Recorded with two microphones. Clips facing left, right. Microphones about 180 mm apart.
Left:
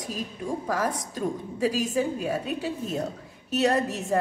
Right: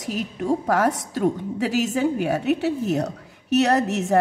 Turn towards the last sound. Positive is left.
turn(degrees=-75)  # may be behind; listen again after turning